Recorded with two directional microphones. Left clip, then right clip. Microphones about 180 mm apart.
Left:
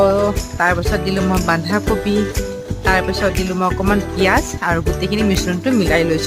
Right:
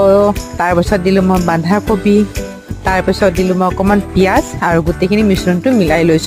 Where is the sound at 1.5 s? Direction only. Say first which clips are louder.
Right 4 dB; 35° right (ahead or behind).